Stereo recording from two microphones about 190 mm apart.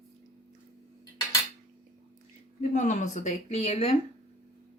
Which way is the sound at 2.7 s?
40° left (ahead or behind).